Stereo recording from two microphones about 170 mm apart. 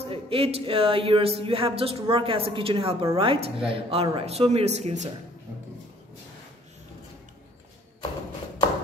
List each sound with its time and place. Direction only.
0.0 s speech: 35° right (ahead or behind)